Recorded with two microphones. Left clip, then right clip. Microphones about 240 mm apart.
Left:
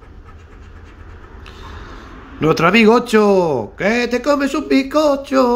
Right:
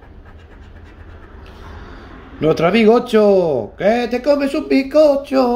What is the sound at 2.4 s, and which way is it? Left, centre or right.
A man's voice, centre.